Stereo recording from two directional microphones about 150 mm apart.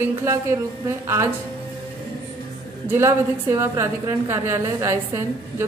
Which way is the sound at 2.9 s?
20° right (ahead or behind).